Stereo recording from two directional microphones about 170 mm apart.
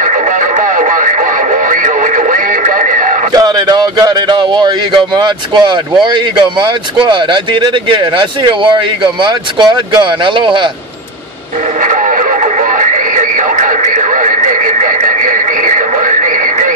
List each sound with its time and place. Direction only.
0.6 s radio: 50° right (ahead or behind)
3.3 s speech: 25° right (ahead or behind)
7.9 s speech: 30° right (ahead or behind)
12.7 s radio: 45° right (ahead or behind)